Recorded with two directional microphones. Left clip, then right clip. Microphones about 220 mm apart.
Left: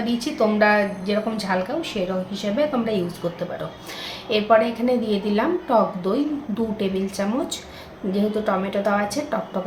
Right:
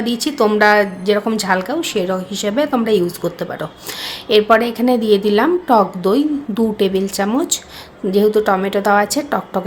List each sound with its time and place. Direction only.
0.0 s a woman's voice: 55° right (ahead or behind)
4.3 s a woman's voice: 50° right (ahead or behind)